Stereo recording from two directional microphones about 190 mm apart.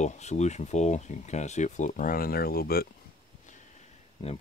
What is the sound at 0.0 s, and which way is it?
Speech, 35° left (ahead or behind).